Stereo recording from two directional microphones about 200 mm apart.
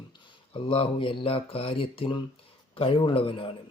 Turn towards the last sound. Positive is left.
turn(degrees=25)  # may be behind; listen again after turning